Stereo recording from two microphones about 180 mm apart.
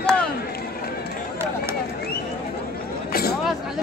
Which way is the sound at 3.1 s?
60° left (ahead or behind).